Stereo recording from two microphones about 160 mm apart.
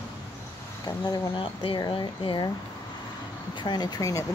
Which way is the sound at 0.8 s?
25° left (ahead or behind).